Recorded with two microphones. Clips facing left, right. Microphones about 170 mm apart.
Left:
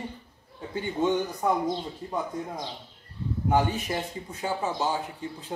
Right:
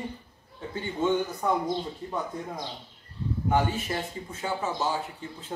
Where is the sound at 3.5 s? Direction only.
15° left (ahead or behind).